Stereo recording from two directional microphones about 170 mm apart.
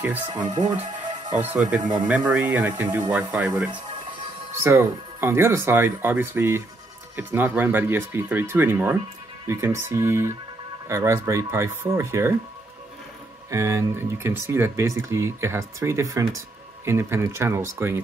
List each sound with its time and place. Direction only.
0.7 s music: 25° right (ahead or behind)
1.8 s speech: 25° right (ahead or behind)
2.0 s speech: 10° right (ahead or behind)
13.5 s speech: 15° right (ahead or behind)